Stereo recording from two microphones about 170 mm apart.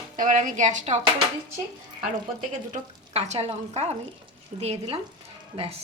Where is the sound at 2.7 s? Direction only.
40° right (ahead or behind).